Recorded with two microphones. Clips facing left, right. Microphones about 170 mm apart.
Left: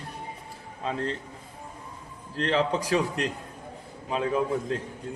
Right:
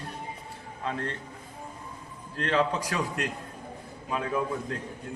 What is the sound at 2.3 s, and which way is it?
A man's voice, 25° left (ahead or behind).